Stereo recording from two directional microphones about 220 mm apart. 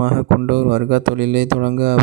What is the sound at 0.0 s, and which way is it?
Speech, 45° right (ahead or behind).